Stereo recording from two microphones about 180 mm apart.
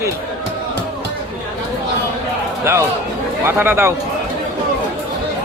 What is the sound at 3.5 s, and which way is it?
Speech, 10° right (ahead or behind).